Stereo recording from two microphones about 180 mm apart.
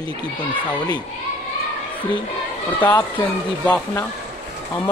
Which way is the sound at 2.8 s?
15° left (ahead or behind).